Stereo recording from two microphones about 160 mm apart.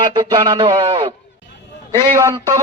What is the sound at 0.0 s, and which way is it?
Speech, 30° right (ahead or behind).